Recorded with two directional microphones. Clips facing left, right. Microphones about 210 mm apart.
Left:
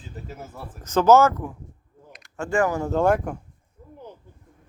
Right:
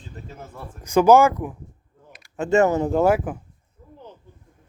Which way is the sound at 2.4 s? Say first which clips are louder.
Right 5 dB; 25° right (ahead or behind).